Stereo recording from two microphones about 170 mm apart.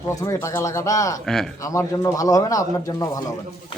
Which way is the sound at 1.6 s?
20° left (ahead or behind).